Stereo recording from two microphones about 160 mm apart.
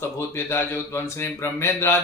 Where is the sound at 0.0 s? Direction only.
15° left (ahead or behind).